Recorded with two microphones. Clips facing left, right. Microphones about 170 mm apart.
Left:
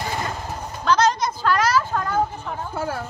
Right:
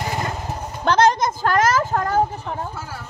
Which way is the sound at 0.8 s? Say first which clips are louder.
Right 3 dB; 50° right (ahead or behind).